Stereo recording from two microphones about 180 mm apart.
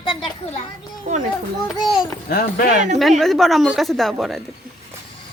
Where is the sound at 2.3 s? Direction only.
55° left (ahead or behind).